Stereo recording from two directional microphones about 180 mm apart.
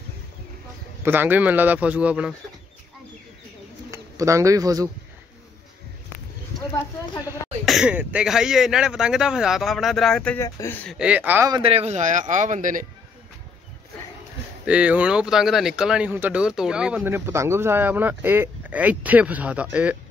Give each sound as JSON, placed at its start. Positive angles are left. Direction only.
{"t": 1.0, "sound": "speech", "side_deg": -10}
{"t": 3.9, "sound": "speech", "side_deg": -15}
{"t": 7.6, "sound": "speech", "side_deg": -5}
{"t": 11.0, "sound": "speech", "side_deg": -5}
{"t": 11.5, "sound": "a man's voice", "side_deg": -30}
{"t": 14.7, "sound": "speech", "side_deg": -5}